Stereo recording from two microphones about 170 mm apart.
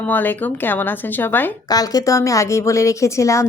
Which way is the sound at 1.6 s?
20° left (ahead or behind).